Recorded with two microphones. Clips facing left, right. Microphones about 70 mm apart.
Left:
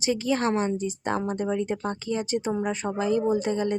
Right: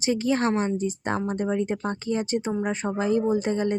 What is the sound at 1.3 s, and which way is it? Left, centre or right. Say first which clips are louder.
Speech: right 1 dB; right.